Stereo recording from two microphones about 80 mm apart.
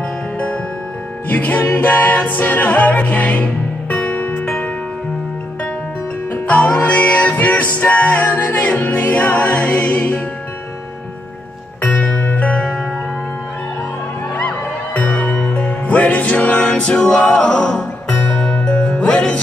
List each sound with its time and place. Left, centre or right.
1.3 s music: left
6.3 s music: centre
11.8 s music: centre
15.0 s music: centre